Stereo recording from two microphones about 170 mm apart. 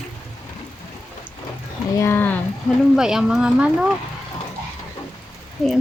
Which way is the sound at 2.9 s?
5° right (ahead or behind).